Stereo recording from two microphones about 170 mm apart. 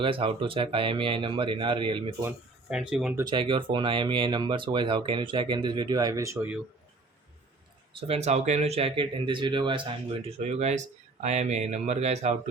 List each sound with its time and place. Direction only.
0.0 s speech: 30° right (ahead or behind)
2.2 s speech: 5° right (ahead or behind)
3.2 s speech: 25° right (ahead or behind)
7.9 s speech: 35° right (ahead or behind)